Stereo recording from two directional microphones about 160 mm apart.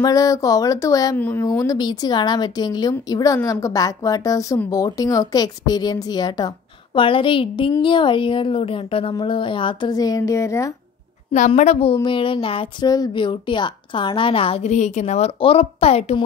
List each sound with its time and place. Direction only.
0.0 s a woman's voice: 20° left (ahead or behind)
1.1 s a woman's voice: 10° left (ahead or behind)
11.3 s a woman's voice: 45° left (ahead or behind)